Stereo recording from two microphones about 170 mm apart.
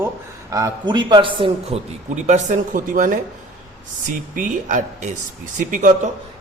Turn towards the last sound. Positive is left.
turn(degrees=-50)  # may be behind; listen again after turning